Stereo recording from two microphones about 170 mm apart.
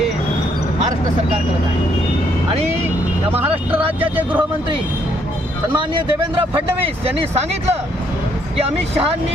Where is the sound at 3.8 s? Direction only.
30° right (ahead or behind).